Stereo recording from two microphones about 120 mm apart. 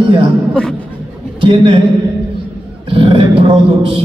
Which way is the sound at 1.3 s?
45° right (ahead or behind).